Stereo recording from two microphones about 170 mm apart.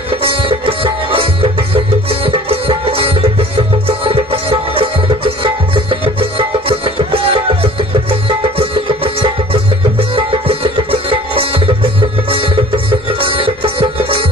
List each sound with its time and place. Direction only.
0.2 s music: 30° right (ahead or behind)